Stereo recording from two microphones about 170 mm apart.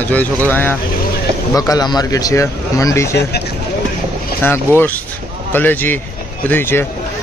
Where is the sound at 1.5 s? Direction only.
20° left (ahead or behind).